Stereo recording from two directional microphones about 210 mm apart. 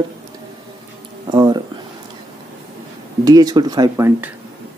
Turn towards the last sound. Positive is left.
turn(degrees=-10)  # may be behind; listen again after turning